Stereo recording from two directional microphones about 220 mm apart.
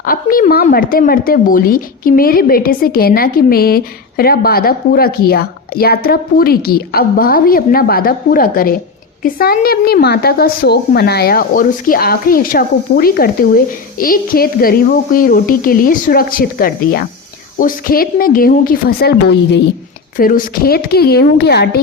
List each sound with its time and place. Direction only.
0.0 s speech: 40° left (ahead or behind)
20.1 s speech: 40° left (ahead or behind)